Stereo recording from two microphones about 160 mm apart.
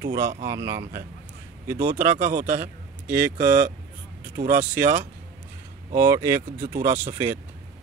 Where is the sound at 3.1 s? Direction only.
70° right (ahead or behind).